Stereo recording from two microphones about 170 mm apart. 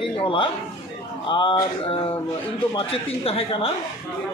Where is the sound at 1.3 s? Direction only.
30° left (ahead or behind).